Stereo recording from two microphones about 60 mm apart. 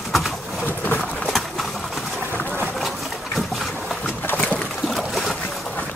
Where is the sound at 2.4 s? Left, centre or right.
Right.